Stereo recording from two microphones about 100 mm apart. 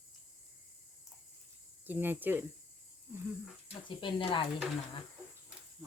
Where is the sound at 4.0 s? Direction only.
55° left (ahead or behind).